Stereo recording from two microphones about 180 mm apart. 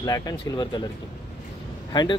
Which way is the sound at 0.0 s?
20° left (ahead or behind).